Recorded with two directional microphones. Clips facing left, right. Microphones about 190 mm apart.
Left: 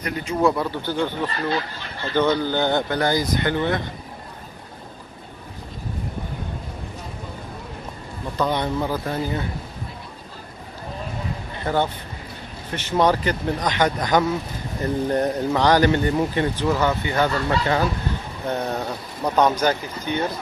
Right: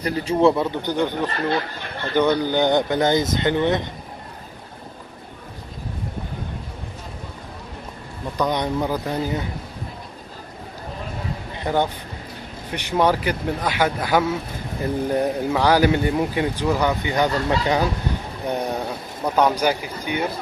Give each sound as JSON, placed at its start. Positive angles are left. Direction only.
{"t": 0.0, "sound": "speech", "side_deg": -30}
{"t": 8.4, "sound": "speech", "side_deg": -15}
{"t": 11.5, "sound": "speech", "side_deg": -15}